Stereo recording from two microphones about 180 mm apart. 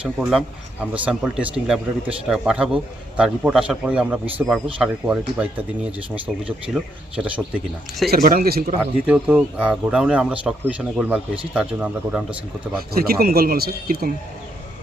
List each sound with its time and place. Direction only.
0.0 s a man's voice: 5° right (ahead or behind)
8.1 s a man's voice: 55° right (ahead or behind)
8.8 s speech: 10° right (ahead or behind)
12.9 s a man's voice: 55° right (ahead or behind)